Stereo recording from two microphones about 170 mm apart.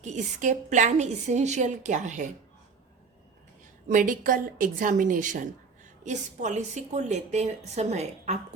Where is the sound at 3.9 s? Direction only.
50° right (ahead or behind).